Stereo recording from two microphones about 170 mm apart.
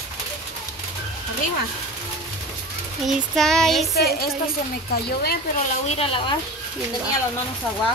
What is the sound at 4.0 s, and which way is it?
A woman's voice, 65° left (ahead or behind).